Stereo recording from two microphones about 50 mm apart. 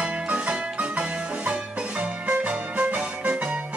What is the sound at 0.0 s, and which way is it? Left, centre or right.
Music, right.